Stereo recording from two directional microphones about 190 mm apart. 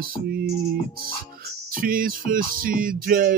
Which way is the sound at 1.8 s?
50° right (ahead or behind).